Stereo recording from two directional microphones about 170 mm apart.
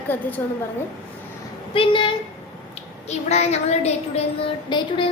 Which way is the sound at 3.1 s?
40° left (ahead or behind).